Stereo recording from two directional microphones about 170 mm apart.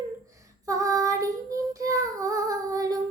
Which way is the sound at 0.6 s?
20° right (ahead or behind).